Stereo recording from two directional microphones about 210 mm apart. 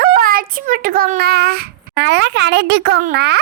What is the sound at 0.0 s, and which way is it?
Speech, 40° right (ahead or behind).